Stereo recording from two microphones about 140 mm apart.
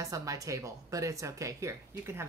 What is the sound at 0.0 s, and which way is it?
Speech, 25° right (ahead or behind).